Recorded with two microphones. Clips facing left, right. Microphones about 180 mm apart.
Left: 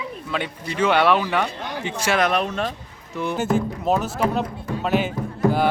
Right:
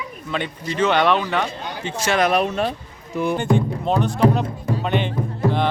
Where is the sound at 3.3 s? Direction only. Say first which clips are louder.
Right 1 dB; 5° left (ahead or behind).